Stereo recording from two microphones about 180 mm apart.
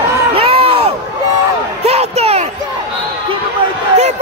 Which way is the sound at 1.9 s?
35° right (ahead or behind).